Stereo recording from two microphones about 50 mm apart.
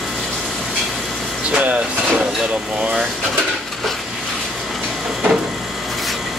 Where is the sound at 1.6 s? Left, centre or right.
Right.